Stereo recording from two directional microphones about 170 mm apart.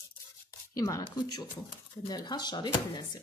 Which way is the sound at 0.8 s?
20° left (ahead or behind).